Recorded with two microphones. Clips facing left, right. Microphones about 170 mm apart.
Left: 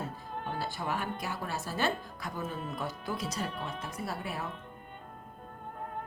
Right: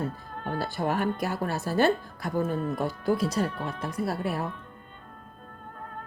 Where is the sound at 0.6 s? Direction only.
60° right (ahead or behind).